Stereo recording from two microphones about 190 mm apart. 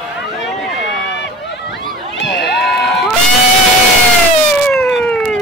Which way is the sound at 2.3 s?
65° left (ahead or behind).